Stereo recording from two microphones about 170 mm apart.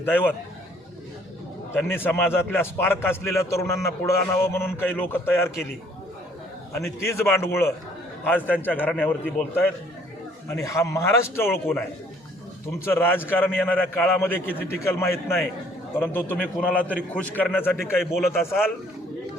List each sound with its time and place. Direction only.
0.0 s a man's voice: 10° left (ahead or behind)
1.7 s a man's voice: 15° left (ahead or behind)
6.7 s a man's voice: 15° left (ahead or behind)
12.8 s a man's voice: 15° left (ahead or behind)
18.0 s a man's voice: centre (ahead or behind)